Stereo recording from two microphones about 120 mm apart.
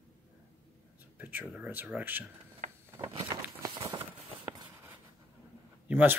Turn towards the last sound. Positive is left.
turn(degrees=-15)  # may be behind; listen again after turning